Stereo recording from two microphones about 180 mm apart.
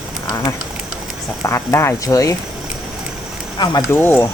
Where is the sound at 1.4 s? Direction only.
15° left (ahead or behind).